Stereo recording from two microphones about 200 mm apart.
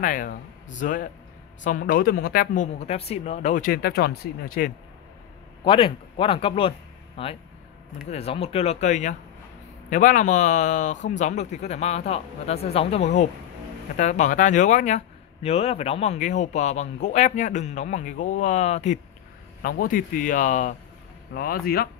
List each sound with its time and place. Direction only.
0.0 s speech: 40° left (ahead or behind)
5.6 s speech: 25° left (ahead or behind); by 21.8 s 50° left (ahead or behind)